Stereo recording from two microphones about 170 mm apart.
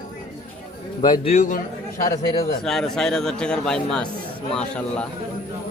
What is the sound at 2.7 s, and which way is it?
Speech, 5° left (ahead or behind).